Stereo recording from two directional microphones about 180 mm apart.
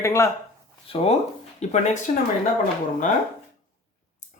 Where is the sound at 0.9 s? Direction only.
30° left (ahead or behind).